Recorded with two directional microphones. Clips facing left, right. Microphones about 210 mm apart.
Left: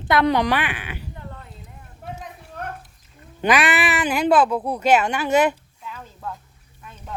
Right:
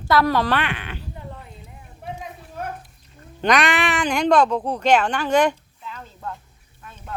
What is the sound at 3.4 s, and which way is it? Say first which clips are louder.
Speech: even; 5° left (ahead or behind).